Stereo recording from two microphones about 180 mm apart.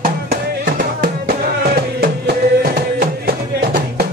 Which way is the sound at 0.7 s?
55° right (ahead or behind).